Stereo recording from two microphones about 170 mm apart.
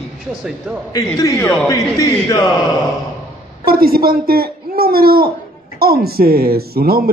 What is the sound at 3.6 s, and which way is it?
Speech, 60° right (ahead or behind).